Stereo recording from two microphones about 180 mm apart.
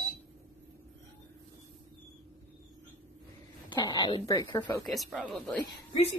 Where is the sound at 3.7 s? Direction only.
20° left (ahead or behind).